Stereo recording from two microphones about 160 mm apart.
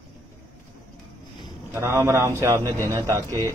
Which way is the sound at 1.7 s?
15° right (ahead or behind).